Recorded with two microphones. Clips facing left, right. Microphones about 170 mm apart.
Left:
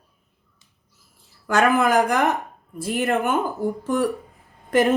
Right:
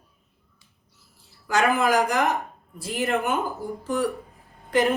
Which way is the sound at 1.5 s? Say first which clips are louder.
Left 3 dB; 55° left (ahead or behind).